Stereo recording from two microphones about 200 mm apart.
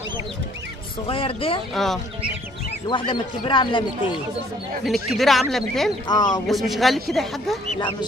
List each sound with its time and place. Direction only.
1.0 s speech: 25° left (ahead or behind)
1.8 s a man's voice: centre (ahead or behind)
3.1 s speech: 25° left (ahead or behind)
4.8 s a man's voice: centre (ahead or behind)
6.0 s speech: 20° left (ahead or behind)
6.4 s a man's voice: centre (ahead or behind)